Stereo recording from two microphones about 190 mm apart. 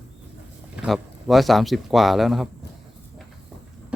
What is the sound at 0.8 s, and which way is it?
A man's voice, 5° right (ahead or behind).